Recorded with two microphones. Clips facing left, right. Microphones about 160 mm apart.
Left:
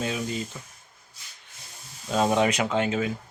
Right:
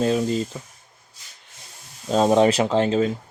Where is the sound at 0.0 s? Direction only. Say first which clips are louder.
Right 9 dB; 35° right (ahead or behind).